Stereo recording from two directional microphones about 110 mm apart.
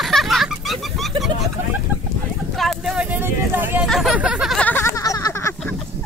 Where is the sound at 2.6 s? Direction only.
Centre (ahead or behind).